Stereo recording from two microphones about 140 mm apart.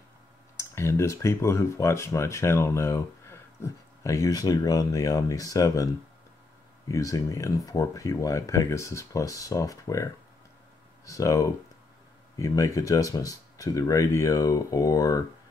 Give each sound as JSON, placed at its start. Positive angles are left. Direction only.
{"t": 0.6, "sound": "speech", "side_deg": 20}
{"t": 6.9, "sound": "speech", "side_deg": 25}
{"t": 11.1, "sound": "speech", "side_deg": 25}